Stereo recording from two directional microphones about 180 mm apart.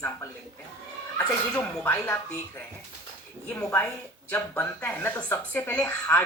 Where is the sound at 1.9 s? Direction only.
15° left (ahead or behind).